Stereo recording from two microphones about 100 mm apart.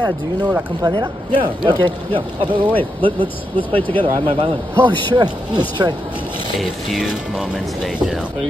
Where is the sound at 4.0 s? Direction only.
60° right (ahead or behind).